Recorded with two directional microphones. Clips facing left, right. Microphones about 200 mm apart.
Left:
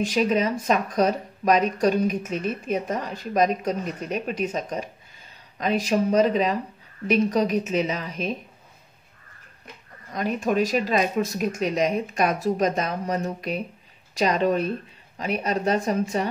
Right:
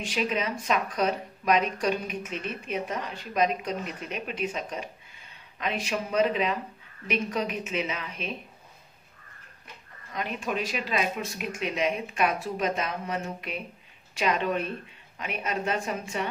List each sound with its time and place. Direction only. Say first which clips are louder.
0.0 s speech: left 7 dB; 40° left (ahead or behind)
10.1 s speech: left 8 dB; 40° left (ahead or behind)